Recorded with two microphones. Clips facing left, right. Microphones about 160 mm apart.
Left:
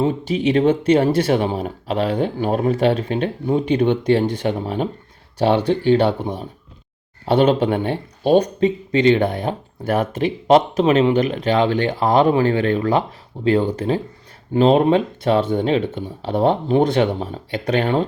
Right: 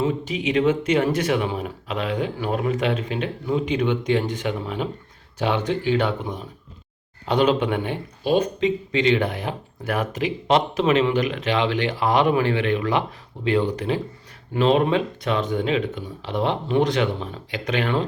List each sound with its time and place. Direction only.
0.0 s speech: 35° left (ahead or behind)
8.3 s speech: 40° left (ahead or behind)
9.1 s speech: 30° left (ahead or behind)